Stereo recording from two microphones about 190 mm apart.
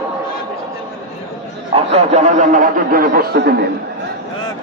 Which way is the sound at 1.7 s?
35° right (ahead or behind).